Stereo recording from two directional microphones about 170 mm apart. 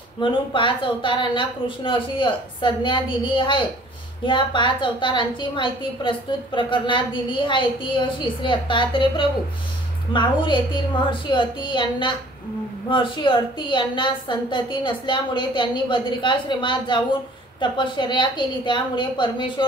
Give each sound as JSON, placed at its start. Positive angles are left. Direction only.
{"t": 0.2, "sound": "a woman's voice", "side_deg": 30}